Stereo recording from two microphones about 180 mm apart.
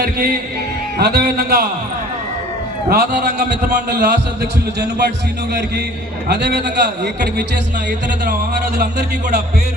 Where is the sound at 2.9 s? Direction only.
60° right (ahead or behind).